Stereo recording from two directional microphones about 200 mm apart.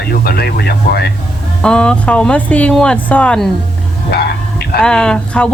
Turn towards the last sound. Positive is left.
turn(degrees=5)  # may be behind; listen again after turning